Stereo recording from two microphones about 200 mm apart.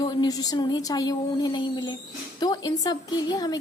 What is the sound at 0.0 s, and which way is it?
A woman's voice, 20° left (ahead or behind).